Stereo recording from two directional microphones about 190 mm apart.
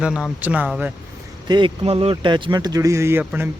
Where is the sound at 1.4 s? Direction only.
25° right (ahead or behind).